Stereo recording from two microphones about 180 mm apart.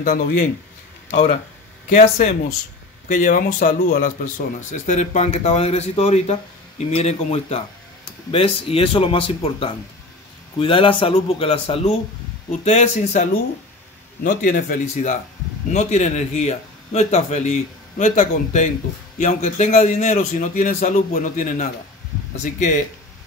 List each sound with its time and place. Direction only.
0.0 s a man's voice: 50° left (ahead or behind)
1.1 s a man's voice: 40° left (ahead or behind)